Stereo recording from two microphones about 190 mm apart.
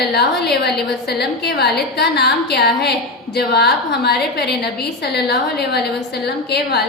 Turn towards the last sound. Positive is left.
turn(degrees=60)  # may be behind; listen again after turning